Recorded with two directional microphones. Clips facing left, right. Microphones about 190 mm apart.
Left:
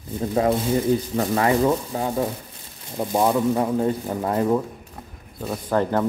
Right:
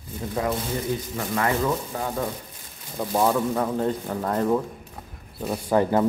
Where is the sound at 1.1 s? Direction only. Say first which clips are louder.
Left 2 dB; 30° left (ahead or behind); by 4.6 s 10° left (ahead or behind).